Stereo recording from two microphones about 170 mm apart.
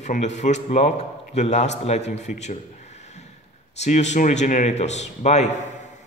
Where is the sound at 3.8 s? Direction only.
40° left (ahead or behind).